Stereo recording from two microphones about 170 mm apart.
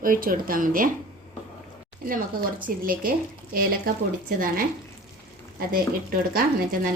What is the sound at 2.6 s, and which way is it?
Speech, 55° right (ahead or behind).